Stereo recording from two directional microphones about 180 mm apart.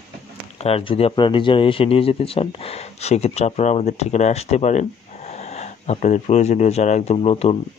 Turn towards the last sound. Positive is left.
turn(degrees=35)  # may be behind; listen again after turning